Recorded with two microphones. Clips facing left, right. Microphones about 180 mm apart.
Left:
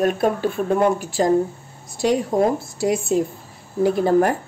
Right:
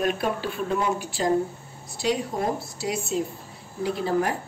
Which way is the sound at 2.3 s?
90° left.